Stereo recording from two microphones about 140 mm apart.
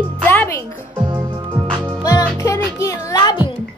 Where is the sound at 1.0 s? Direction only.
30° right (ahead or behind).